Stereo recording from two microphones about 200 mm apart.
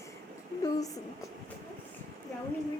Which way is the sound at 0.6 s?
15° left (ahead or behind).